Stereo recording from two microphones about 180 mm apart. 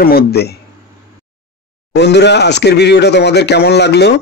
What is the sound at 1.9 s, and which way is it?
Speech, 70° left (ahead or behind).